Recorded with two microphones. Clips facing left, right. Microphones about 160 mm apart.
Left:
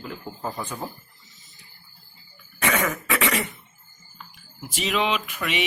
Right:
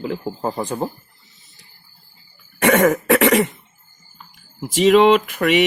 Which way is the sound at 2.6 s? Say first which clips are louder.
Right 10 dB; 90° right.